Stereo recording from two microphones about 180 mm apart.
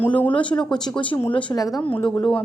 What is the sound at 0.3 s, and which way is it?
A woman's voice, 25° left (ahead or behind).